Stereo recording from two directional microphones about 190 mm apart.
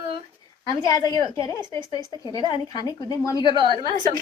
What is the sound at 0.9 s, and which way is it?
A woman's voice, 20° left (ahead or behind).